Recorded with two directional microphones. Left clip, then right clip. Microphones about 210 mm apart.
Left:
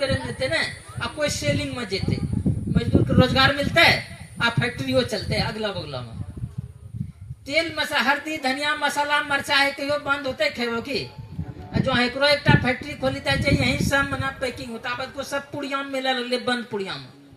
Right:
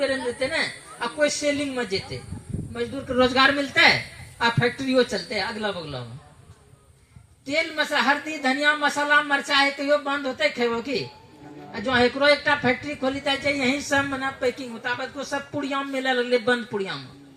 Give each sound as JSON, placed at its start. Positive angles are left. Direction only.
{"t": 0.3, "sound": "speech", "side_deg": 40}
{"t": 7.4, "sound": "speech", "side_deg": 40}